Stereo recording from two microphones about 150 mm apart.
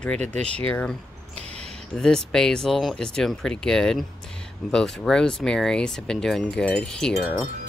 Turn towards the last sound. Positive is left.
turn(degrees=5)  # may be behind; listen again after turning